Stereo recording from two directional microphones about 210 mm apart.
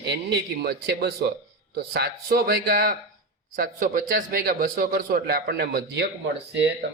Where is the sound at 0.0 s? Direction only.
50° right (ahead or behind).